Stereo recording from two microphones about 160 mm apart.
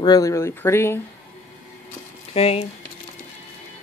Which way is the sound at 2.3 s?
40° left (ahead or behind).